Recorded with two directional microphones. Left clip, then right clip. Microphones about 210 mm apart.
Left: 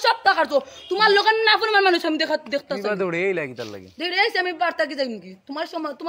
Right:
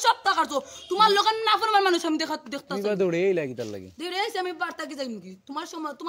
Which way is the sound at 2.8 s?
55° right (ahead or behind).